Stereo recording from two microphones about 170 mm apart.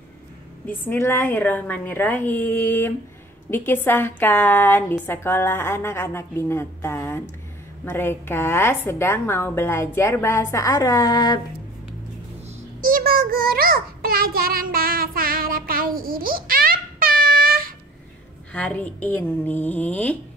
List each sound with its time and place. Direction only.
0.7 s a woman's voice: 10° left (ahead or behind)
12.8 s child singing: 60° right (ahead or behind)
18.5 s a woman's voice: 10° left (ahead or behind)